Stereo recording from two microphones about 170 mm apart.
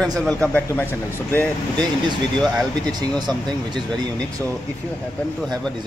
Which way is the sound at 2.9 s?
25° right (ahead or behind).